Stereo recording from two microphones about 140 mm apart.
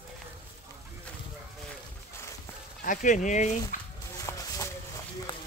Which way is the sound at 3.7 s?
70° left (ahead or behind).